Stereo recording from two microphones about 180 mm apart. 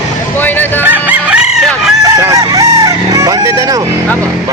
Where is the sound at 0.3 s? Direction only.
10° left (ahead or behind).